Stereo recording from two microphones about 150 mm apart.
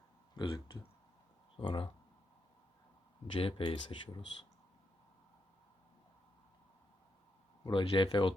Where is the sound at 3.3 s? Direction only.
35° left (ahead or behind).